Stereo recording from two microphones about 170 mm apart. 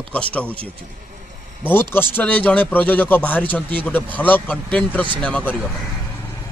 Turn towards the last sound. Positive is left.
turn(degrees=10)  # may be behind; listen again after turning